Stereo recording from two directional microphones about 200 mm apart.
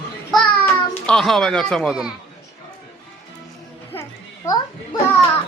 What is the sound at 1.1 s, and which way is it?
A man's voice, centre (ahead or behind).